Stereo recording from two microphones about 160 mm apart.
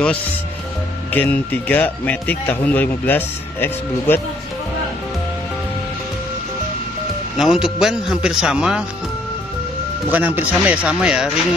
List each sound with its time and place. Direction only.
1.1 s speech: 10° left (ahead or behind)
7.3 s speech: 5° right (ahead or behind)
10.0 s speech: 10° right (ahead or behind)